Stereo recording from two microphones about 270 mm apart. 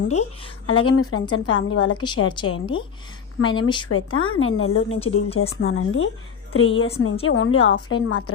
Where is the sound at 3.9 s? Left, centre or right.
Left.